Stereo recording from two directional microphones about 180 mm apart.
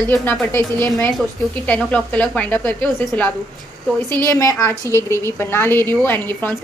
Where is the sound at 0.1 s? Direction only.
10° left (ahead or behind).